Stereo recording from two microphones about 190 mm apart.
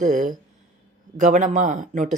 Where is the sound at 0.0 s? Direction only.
40° right (ahead or behind).